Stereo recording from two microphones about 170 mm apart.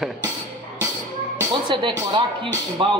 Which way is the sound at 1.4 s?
30° right (ahead or behind).